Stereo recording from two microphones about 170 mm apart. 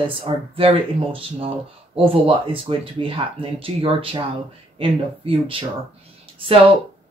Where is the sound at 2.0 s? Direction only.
35° right (ahead or behind).